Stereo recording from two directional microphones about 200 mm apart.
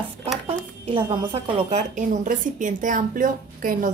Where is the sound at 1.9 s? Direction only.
40° right (ahead or behind).